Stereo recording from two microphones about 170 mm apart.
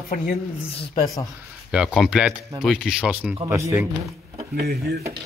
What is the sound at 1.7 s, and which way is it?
Speech, 5° right (ahead or behind).